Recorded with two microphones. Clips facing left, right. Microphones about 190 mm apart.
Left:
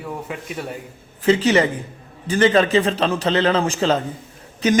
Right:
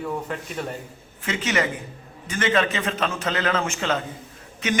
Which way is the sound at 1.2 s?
35° left (ahead or behind).